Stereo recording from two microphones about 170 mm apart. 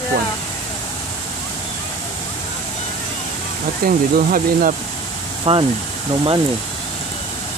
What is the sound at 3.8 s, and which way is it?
Speech, 60° right (ahead or behind).